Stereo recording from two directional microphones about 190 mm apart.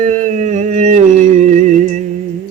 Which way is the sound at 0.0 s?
40° right (ahead or behind).